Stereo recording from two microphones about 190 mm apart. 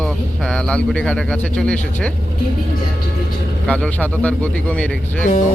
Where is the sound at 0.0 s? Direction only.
5° left (ahead or behind).